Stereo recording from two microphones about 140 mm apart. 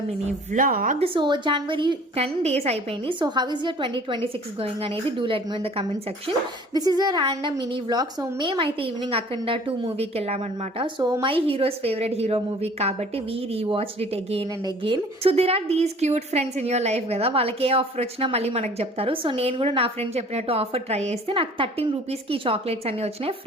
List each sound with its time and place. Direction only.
0.3 s speech: 70° right (ahead or behind)
0.9 s a woman's voice: 40° right (ahead or behind)
2.1 s a woman's voice: 50° right (ahead or behind)
6.7 s a woman's voice: 30° right (ahead or behind); by 10.8 s 50° right (ahead or behind)
10.8 s a woman's voice: 35° right (ahead or behind)